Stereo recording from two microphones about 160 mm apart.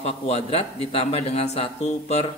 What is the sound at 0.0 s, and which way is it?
A man's voice, 40° left (ahead or behind).